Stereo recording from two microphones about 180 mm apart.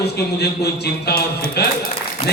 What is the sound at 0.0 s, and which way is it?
A man's voice, 65° left (ahead or behind).